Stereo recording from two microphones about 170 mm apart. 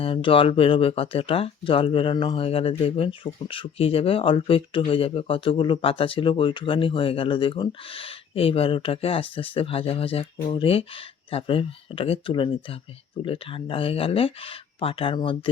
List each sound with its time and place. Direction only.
0.0 s speech: 30° left (ahead or behind)